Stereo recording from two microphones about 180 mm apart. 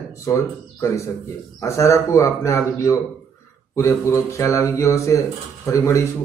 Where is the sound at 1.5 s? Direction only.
15° left (ahead or behind).